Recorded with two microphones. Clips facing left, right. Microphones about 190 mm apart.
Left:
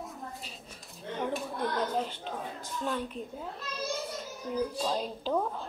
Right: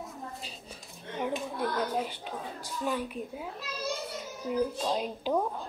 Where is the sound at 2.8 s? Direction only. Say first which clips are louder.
Right 2 dB; 10° right (ahead or behind).